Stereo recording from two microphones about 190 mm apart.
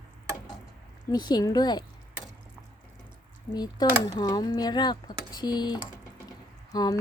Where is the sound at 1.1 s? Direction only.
20° left (ahead or behind).